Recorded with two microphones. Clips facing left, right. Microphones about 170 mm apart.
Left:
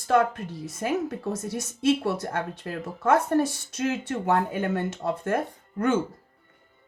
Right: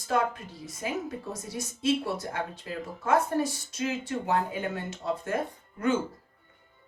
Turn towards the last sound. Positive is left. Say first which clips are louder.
# left 3 dB
turn(degrees=55)  # may be behind; listen again after turning